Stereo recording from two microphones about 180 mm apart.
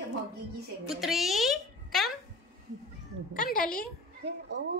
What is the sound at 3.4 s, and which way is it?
Speech, 50° left (ahead or behind).